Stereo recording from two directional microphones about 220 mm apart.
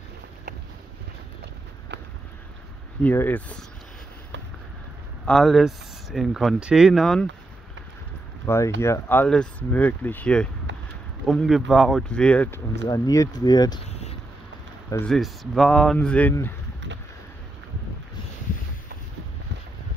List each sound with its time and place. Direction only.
3.0 s speech: 10° left (ahead or behind)
5.2 s speech: centre (ahead or behind)
8.5 s speech: 10° left (ahead or behind)
14.9 s speech: 5° left (ahead or behind)